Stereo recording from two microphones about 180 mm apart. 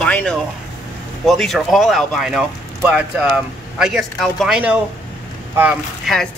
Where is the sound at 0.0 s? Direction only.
10° left (ahead or behind).